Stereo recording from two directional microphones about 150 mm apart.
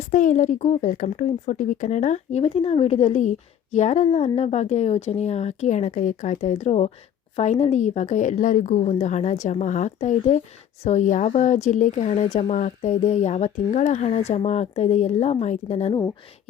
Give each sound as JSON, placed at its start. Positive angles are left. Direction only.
{"t": 0.0, "sound": "speech", "side_deg": 55}